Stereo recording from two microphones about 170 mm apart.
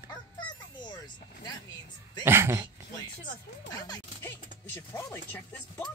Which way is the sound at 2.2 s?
15° right (ahead or behind).